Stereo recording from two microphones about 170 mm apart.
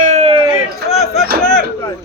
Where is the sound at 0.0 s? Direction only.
40° right (ahead or behind).